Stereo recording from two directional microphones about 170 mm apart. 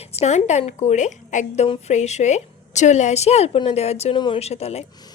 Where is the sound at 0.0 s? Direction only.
40° left (ahead or behind).